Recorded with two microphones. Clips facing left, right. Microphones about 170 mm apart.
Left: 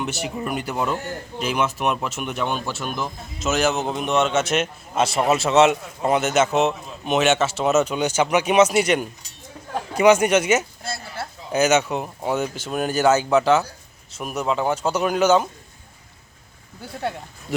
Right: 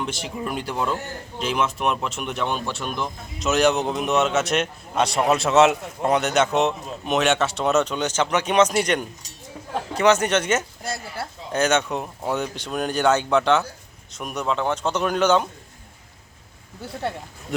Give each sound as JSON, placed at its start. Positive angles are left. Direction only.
{"t": 0.0, "sound": "a man's voice", "side_deg": 5}
{"t": 10.8, "sound": "a woman's voice", "side_deg": -15}
{"t": 11.5, "sound": "a man's voice", "side_deg": 5}
{"t": 16.8, "sound": "speech", "side_deg": 0}